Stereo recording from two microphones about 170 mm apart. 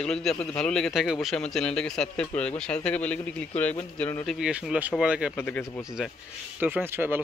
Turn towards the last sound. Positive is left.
turn(degrees=-10)  # may be behind; listen again after turning